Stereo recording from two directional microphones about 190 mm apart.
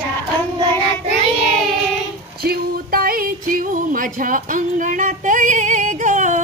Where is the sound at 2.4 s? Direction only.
50° right (ahead or behind).